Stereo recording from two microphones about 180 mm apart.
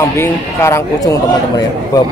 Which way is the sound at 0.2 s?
15° left (ahead or behind).